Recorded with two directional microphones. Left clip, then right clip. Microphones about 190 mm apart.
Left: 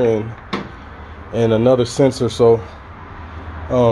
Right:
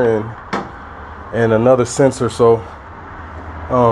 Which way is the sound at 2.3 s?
Centre (ahead or behind).